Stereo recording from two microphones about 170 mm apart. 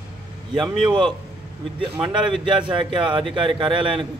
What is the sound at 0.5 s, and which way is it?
Speech, 30° right (ahead or behind).